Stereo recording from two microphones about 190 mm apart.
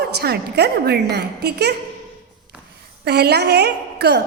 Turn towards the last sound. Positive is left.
turn(degrees=-60)  # may be behind; listen again after turning